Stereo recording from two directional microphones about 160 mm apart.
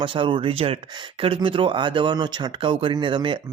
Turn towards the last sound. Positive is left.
turn(degrees=-30)  # may be behind; listen again after turning